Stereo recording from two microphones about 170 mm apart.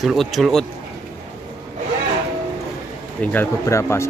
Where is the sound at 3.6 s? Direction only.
15° left (ahead or behind).